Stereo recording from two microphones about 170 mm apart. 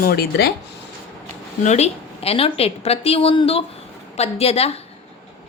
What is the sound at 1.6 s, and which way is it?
A woman's voice, 40° left (ahead or behind).